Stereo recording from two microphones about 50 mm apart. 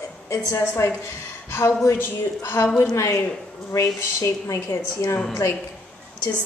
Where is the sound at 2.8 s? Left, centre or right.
Left.